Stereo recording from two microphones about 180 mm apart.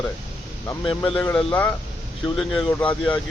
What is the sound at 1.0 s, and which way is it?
Speech, 5° left (ahead or behind).